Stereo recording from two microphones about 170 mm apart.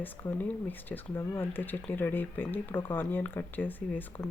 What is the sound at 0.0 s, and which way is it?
Speech, 10° left (ahead or behind).